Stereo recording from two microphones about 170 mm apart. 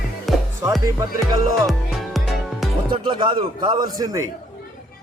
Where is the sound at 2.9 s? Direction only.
25° right (ahead or behind).